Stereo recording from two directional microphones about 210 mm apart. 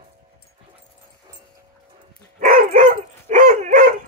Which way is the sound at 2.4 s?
40° right (ahead or behind).